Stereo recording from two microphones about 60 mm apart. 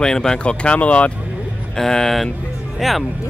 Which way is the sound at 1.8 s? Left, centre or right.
Centre.